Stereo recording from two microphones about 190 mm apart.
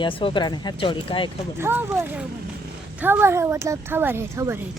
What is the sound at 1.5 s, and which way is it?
Speech, 10° right (ahead or behind).